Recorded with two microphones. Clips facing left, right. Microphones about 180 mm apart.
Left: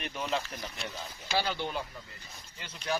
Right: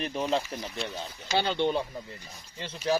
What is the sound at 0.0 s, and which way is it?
Speech, 35° right (ahead or behind).